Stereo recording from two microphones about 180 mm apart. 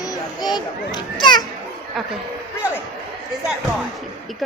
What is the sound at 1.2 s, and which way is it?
Speech, 25° left (ahead or behind).